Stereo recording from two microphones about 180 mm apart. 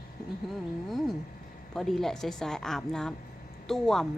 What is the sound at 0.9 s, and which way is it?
Speech, centre (ahead or behind).